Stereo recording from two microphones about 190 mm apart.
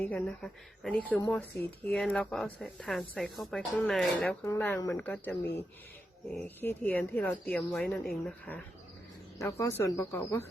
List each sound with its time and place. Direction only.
0.0 s speech: 5° left (ahead or behind)
4.4 s speech: 10° left (ahead or behind)
9.4 s speech: 15° left (ahead or behind)